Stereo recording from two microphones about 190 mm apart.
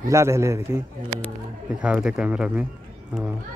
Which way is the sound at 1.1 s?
5° left (ahead or behind).